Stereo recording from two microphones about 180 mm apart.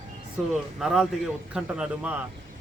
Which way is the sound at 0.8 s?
Centre (ahead or behind).